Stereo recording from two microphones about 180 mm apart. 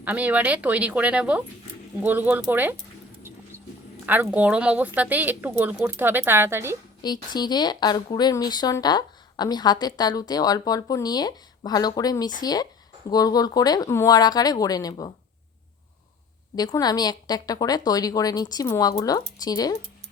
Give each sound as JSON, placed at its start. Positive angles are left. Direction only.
{"t": 0.0, "sound": "speech", "side_deg": -10}
{"t": 4.0, "sound": "speech", "side_deg": -10}
{"t": 7.0, "sound": "speech", "side_deg": 25}
{"t": 16.6, "sound": "speech", "side_deg": 20}